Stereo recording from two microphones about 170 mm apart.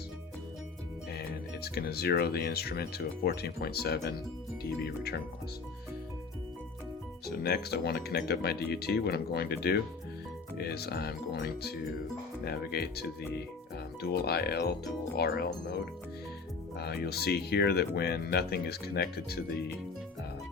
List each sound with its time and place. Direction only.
1.6 s speech: 70° left (ahead or behind)
7.3 s speech: 70° left (ahead or behind)
16.7 s speech: 70° left (ahead or behind)